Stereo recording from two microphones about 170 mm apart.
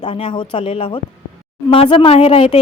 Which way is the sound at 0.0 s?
30° left (ahead or behind).